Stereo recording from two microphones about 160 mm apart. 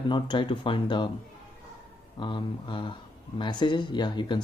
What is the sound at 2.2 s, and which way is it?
Speech, 30° left (ahead or behind).